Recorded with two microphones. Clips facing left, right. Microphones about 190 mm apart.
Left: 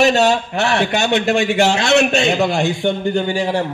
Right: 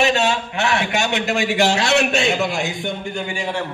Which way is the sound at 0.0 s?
40° left (ahead or behind).